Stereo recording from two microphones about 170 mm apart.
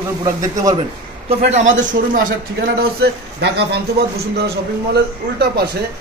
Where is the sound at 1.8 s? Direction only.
50° right (ahead or behind).